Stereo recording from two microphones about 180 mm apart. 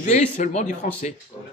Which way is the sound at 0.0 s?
40° left (ahead or behind).